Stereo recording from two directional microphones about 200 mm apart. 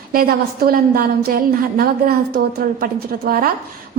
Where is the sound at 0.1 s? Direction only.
50° right (ahead or behind).